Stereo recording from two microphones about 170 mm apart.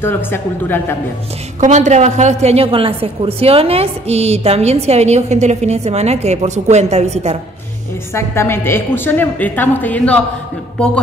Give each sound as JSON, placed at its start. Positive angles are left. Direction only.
{"t": 0.0, "sound": "a woman's voice", "side_deg": 15}
{"t": 1.6, "sound": "a woman's voice", "side_deg": -45}
{"t": 8.1, "sound": "a woman's voice", "side_deg": 15}